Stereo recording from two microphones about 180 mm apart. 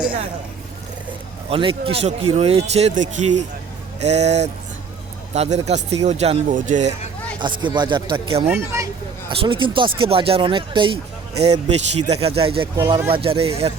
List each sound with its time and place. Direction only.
1.5 s speech: 30° right (ahead or behind)
7.6 s speech: 25° right (ahead or behind)
8.4 s speech: 15° right (ahead or behind)
9.3 s speech: 30° right (ahead or behind)
12.7 s speech: 15° right (ahead or behind)
13.1 s speech: 30° right (ahead or behind)